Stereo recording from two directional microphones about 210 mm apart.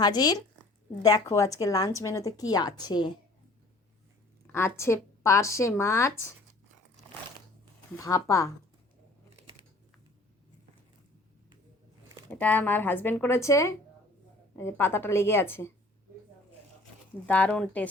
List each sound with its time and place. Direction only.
0.0 s a woman's voice: 20° left (ahead or behind)
4.5 s a woman's voice: 10° left (ahead or behind)
7.9 s a woman's voice: 15° left (ahead or behind)
12.3 s a woman's voice: 10° left (ahead or behind)
17.2 s a woman's voice: 5° left (ahead or behind)